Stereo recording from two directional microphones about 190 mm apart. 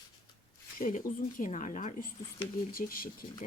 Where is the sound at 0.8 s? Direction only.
45° left (ahead or behind).